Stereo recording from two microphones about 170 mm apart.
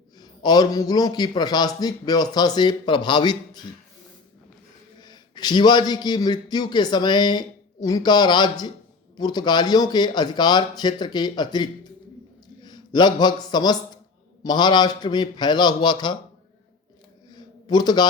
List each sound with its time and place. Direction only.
0.2 s speech: 25° left (ahead or behind)
4.9 s a man's voice: 25° left (ahead or behind)
17.3 s a sound: 25° left (ahead or behind)